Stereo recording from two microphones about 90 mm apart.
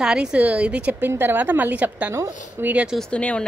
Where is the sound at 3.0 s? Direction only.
15° left (ahead or behind).